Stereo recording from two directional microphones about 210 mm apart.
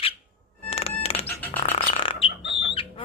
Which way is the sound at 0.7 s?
30° left (ahead or behind).